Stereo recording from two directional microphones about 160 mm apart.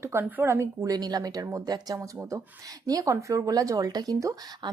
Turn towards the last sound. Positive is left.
turn(degrees=-20)  # may be behind; listen again after turning